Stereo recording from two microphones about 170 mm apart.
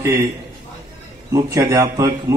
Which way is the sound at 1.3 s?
20° right (ahead or behind).